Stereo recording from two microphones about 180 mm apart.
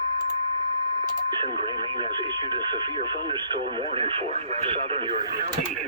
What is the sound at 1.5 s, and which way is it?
Speech, 30° right (ahead or behind).